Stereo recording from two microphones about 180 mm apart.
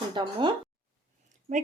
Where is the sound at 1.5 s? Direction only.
45° right (ahead or behind).